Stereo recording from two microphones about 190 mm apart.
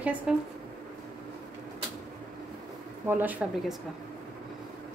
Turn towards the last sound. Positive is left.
turn(degrees=-5)  # may be behind; listen again after turning